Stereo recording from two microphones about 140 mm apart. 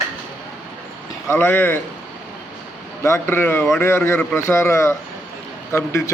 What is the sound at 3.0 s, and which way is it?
A man's voice, 20° left (ahead or behind).